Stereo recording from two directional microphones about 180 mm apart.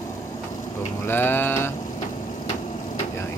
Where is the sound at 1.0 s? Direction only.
10° left (ahead or behind).